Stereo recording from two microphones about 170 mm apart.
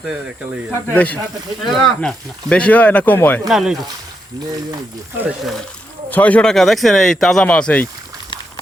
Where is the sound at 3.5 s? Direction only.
5° right (ahead or behind).